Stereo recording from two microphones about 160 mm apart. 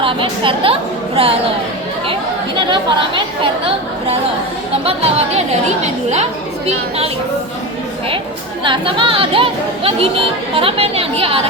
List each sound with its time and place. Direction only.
0.0 s a woman's voice: 35° right (ahead or behind)
4.9 s a woman's voice: 40° right (ahead or behind)
8.6 s speech: 30° right (ahead or behind)